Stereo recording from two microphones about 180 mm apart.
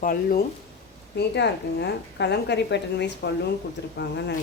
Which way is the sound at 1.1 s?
70° left (ahead or behind).